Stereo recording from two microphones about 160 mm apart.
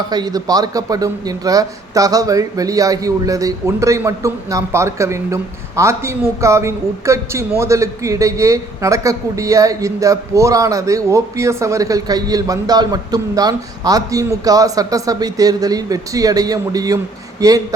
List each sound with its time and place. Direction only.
0.1 s a man's voice: 25° right (ahead or behind)